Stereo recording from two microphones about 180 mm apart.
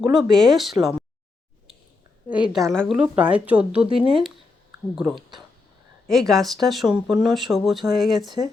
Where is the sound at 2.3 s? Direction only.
10° right (ahead or behind).